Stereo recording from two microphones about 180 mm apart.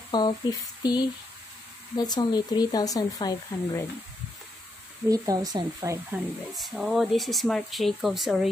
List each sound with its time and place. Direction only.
0.1 s speech: 25° left (ahead or behind)
5.1 s speech: 20° right (ahead or behind)
6.5 s speech: centre (ahead or behind)